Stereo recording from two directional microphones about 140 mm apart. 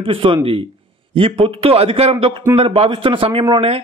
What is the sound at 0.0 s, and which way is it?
A man's voice, 40° right (ahead or behind).